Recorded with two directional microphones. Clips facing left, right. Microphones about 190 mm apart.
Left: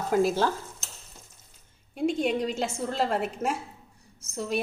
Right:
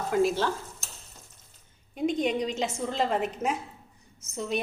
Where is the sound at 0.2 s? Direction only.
40° left (ahead or behind).